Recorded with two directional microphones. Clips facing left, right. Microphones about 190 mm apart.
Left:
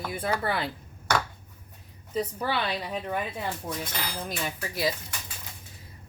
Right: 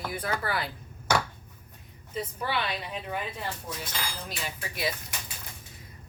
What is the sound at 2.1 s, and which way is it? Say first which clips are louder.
Speech: left 3 dB; 35° left (ahead or behind).